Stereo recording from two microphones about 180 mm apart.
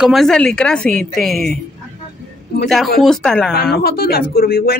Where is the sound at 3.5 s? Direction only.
60° left (ahead or behind).